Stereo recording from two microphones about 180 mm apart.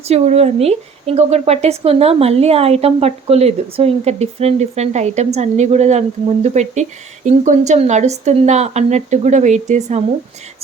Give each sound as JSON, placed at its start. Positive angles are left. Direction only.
{"t": 0.1, "sound": "speech", "side_deg": -35}